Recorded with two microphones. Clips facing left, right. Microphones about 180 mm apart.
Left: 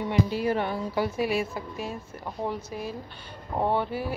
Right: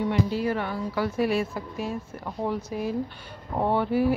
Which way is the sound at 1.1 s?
5° left (ahead or behind).